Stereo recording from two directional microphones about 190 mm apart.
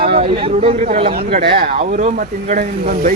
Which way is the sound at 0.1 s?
30° right (ahead or behind).